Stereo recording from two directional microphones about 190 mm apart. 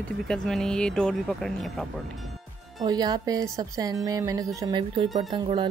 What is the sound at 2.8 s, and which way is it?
Speech, 20° right (ahead or behind).